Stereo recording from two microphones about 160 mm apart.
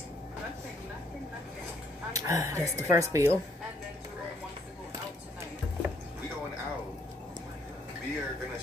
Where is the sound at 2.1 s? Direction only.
20° right (ahead or behind).